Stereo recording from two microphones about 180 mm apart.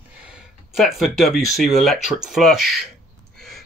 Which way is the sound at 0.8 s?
Centre (ahead or behind).